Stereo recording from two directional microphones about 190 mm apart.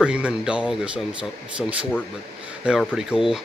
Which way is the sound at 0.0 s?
5° right (ahead or behind).